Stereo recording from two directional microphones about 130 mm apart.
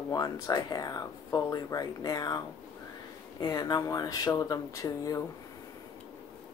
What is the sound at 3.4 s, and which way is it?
Speech, 30° left (ahead or behind).